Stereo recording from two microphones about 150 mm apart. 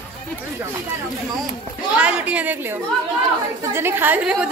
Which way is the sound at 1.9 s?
10° right (ahead or behind).